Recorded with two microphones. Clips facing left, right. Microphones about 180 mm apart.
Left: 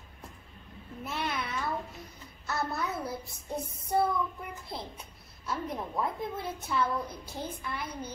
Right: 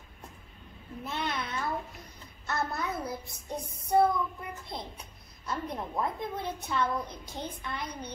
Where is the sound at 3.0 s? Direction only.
Centre (ahead or behind).